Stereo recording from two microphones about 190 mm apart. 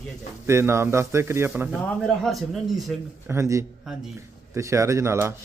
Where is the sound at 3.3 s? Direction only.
15° right (ahead or behind).